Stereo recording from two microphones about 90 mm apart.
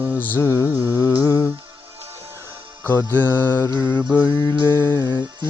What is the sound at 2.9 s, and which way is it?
Music, 20° left (ahead or behind).